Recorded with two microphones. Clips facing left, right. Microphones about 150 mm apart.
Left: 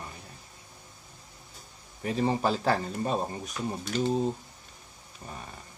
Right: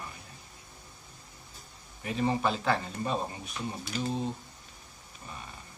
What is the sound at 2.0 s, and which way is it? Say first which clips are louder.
Speech: left 2 dB; 35° left (ahead or behind).